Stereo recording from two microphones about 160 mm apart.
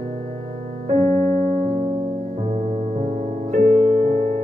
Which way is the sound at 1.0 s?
15° left (ahead or behind).